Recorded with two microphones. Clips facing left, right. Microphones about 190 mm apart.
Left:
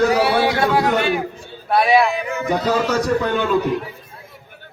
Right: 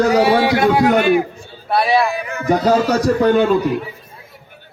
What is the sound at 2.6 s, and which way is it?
Speech, 40° right (ahead or behind).